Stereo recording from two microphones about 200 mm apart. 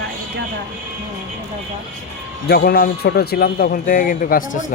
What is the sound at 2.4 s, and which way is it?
A man's voice, 50° left (ahead or behind).